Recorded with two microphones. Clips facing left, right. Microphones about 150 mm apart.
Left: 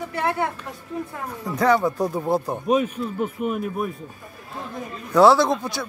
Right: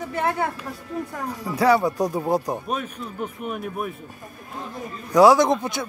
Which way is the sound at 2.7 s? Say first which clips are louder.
Left 8 dB; 5° left (ahead or behind).